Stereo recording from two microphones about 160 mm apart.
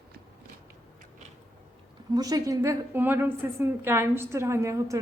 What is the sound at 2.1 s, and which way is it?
A woman's voice, 25° right (ahead or behind).